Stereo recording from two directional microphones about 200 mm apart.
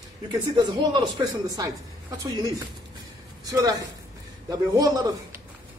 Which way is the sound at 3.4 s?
20° right (ahead or behind).